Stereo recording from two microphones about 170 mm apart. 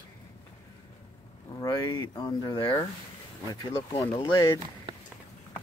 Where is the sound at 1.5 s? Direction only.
25° left (ahead or behind).